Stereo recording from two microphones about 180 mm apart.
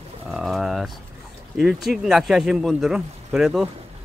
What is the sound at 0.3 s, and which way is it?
Bird, centre (ahead or behind).